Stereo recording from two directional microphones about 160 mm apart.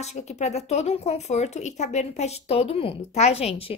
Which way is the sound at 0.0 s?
45° left (ahead or behind).